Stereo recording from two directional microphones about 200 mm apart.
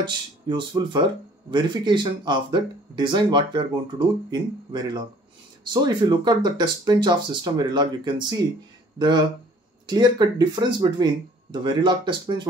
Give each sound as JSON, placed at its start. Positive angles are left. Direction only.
{"t": 0.0, "sound": "speech", "side_deg": -25}